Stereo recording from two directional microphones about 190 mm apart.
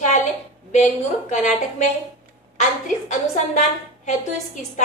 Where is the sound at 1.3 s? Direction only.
40° left (ahead or behind).